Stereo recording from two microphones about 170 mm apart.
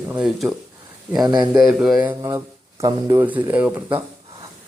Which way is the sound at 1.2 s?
25° right (ahead or behind).